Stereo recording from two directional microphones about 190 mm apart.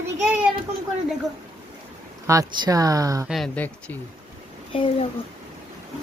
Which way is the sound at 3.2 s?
Centre (ahead or behind).